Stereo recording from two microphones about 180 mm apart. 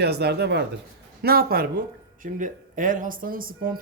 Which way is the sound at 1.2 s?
55° right (ahead or behind).